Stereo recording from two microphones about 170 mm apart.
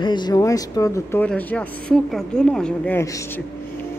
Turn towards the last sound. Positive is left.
turn(degrees=5)  # may be behind; listen again after turning